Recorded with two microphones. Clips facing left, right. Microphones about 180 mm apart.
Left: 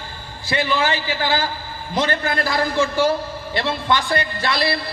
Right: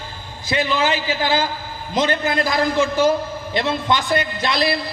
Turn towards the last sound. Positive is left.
turn(degrees=-20)  # may be behind; listen again after turning